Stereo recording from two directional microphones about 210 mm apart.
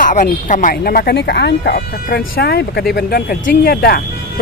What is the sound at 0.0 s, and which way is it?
Speech, 40° left (ahead or behind).